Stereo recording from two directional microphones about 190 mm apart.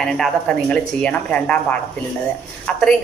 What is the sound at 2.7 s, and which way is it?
Speech, 5° left (ahead or behind).